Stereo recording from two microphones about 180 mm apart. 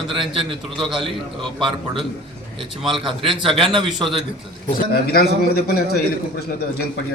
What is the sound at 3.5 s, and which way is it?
Speech, 30° right (ahead or behind).